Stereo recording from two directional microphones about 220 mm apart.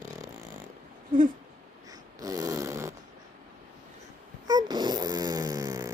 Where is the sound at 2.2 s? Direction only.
15° right (ahead or behind).